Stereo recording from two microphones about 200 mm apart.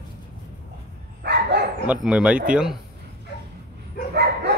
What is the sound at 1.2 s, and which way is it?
Dog, 55° right (ahead or behind).